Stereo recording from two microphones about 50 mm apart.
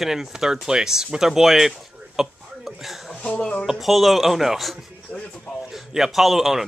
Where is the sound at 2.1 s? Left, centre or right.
Centre.